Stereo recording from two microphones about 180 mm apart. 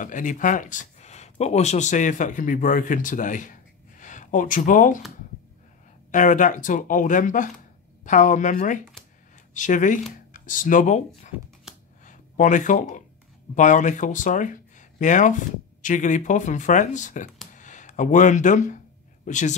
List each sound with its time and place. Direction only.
0.0 s speech: 45° left (ahead or behind)
6.1 s speech: 45° left (ahead or behind)
12.0 s a sound: 45° left (ahead or behind)
13.6 s speech: 45° left (ahead or behind)
17.5 s a sound: 45° left (ahead or behind)
19.2 s speech: 45° left (ahead or behind)